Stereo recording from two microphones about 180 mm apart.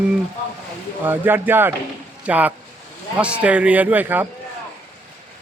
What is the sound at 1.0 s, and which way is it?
Speech, 10° right (ahead or behind).